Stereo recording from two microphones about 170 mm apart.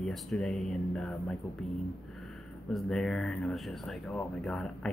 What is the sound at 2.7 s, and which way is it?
Speech, centre (ahead or behind).